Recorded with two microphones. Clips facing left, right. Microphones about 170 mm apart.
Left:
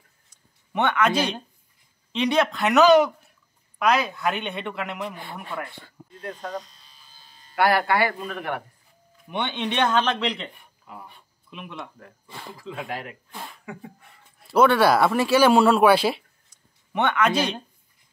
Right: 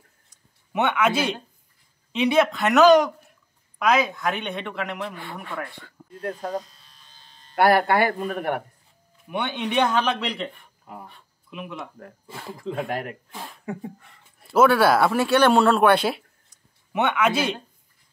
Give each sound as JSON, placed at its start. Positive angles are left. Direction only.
{"t": 0.3, "sound": "a sound", "side_deg": -5}
{"t": 2.1, "sound": "speech", "side_deg": -5}
{"t": 6.3, "sound": "electric shaver", "side_deg": -10}
{"t": 7.5, "sound": "speech", "side_deg": -50}
{"t": 9.3, "sound": "speech", "side_deg": -10}
{"t": 11.5, "sound": "speech", "side_deg": -5}
{"t": 12.5, "sound": "speech", "side_deg": -50}
{"t": 14.5, "sound": "speech", "side_deg": 0}